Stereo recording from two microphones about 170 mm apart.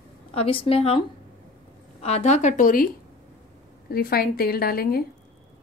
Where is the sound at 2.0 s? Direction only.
40° left (ahead or behind).